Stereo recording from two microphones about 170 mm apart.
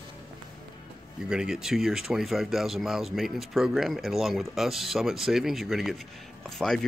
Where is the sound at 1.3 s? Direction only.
5° right (ahead or behind).